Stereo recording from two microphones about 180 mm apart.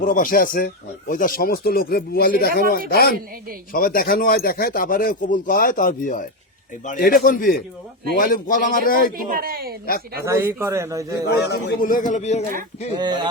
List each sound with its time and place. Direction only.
0.0 s speech: 50° left (ahead or behind)
9.1 s speech: 55° right (ahead or behind)
10.2 s a man's voice: 15° right (ahead or behind)
11.3 s speech: 65° left (ahead or behind); by 12.5 s 40° left (ahead or behind)
12.9 s speech: 25° right (ahead or behind)